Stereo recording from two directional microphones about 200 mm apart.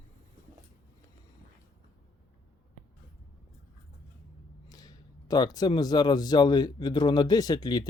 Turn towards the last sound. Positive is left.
turn(degrees=20)  # may be behind; listen again after turning